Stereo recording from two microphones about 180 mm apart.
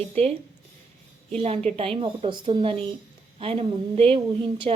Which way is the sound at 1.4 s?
35° right (ahead or behind).